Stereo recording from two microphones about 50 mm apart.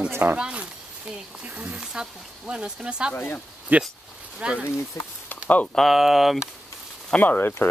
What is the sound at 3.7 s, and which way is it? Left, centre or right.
Speech, right.